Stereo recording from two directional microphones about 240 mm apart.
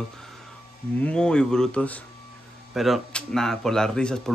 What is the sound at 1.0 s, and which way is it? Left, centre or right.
Speech, centre.